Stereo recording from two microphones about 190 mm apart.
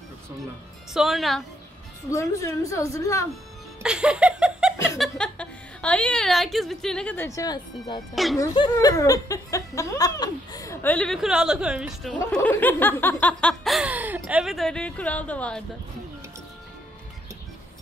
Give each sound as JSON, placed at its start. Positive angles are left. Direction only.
{"t": 0.9, "sound": "snicker", "side_deg": 0}
{"t": 2.0, "sound": "speech", "side_deg": 15}
{"t": 3.8, "sound": "a sound", "side_deg": -5}
{"t": 4.9, "sound": "a woman's voice", "side_deg": 0}
{"t": 8.1, "sound": "snicker", "side_deg": 0}
{"t": 8.4, "sound": "speech", "side_deg": 20}
{"t": 12.3, "sound": "snicker", "side_deg": 10}